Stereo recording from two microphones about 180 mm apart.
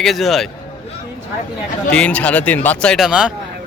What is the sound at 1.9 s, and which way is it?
Speech, 5° left (ahead or behind).